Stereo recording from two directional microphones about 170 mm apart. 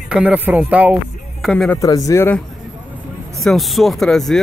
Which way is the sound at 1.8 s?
20° left (ahead or behind).